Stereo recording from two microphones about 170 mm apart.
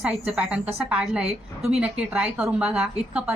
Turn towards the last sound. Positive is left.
turn(degrees=-5)  # may be behind; listen again after turning